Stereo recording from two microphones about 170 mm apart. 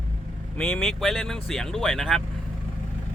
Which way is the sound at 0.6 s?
5° left (ahead or behind).